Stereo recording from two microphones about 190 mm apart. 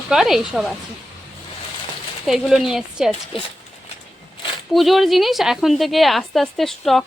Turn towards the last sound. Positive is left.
turn(degrees=0)  # may be behind; listen again after turning